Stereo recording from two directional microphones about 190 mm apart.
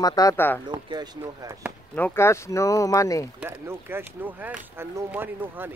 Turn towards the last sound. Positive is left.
turn(degrees=-10)  # may be behind; listen again after turning